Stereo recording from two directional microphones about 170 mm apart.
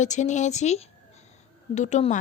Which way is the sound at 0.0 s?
45° left (ahead or behind).